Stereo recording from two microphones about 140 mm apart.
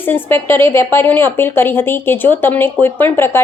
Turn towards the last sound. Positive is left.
turn(degrees=15)  # may be behind; listen again after turning